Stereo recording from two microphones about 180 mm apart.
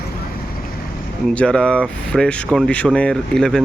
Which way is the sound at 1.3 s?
5° left (ahead or behind).